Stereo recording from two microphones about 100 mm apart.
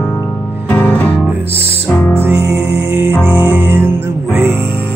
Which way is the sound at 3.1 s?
20° left (ahead or behind).